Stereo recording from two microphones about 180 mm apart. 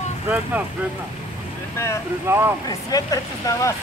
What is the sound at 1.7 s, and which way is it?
Speech, 15° left (ahead or behind).